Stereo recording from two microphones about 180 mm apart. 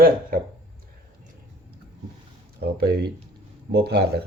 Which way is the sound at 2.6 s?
60° right (ahead or behind).